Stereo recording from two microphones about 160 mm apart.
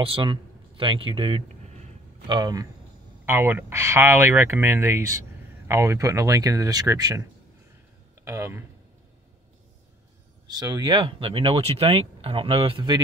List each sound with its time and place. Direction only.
0.0 s a man's voice: 30° right (ahead or behind)
2.2 s speech: 25° right (ahead or behind)
3.3 s speech: 15° right (ahead or behind)
8.3 s speech: 15° right (ahead or behind)
10.5 s speech: 25° right (ahead or behind)